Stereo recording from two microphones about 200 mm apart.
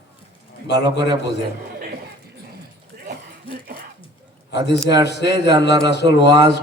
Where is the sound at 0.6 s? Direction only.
60° left (ahead or behind).